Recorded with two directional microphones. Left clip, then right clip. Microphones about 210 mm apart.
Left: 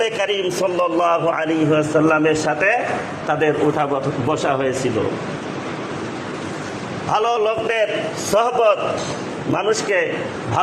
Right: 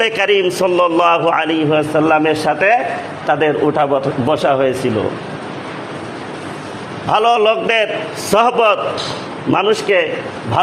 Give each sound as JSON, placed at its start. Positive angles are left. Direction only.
{"t": 0.0, "sound": "a man's voice", "side_deg": -45}
{"t": 7.1, "sound": "a man's voice", "side_deg": -45}